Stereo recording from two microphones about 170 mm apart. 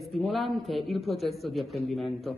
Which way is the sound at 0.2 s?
Centre (ahead or behind).